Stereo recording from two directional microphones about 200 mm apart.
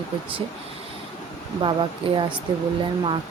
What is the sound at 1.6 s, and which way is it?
Speech, 25° right (ahead or behind).